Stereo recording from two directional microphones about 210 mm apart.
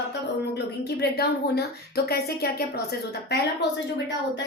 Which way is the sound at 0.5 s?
50° left (ahead or behind).